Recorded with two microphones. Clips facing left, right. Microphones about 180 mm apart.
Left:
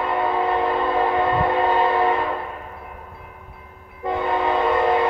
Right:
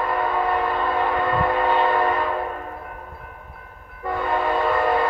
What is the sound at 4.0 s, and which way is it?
Train, 20° left (ahead or behind).